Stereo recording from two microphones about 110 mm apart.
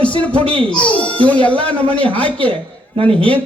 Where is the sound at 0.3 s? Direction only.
55° right (ahead or behind).